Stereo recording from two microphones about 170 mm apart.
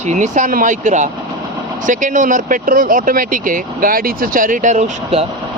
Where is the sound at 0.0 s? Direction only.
45° right (ahead or behind).